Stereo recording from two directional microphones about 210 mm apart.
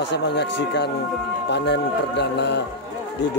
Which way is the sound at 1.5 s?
55° left (ahead or behind).